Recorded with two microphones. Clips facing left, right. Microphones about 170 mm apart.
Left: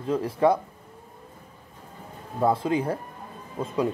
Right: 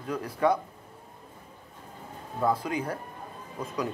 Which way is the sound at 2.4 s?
25° left (ahead or behind).